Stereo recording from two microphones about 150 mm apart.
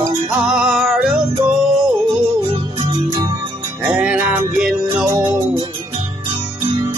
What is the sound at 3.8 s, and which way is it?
Music, 10° right (ahead or behind).